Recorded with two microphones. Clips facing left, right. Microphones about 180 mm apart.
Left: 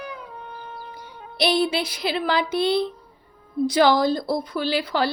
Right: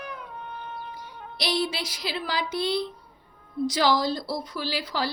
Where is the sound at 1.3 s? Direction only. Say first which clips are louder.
Left 7 dB; 60° left (ahead or behind).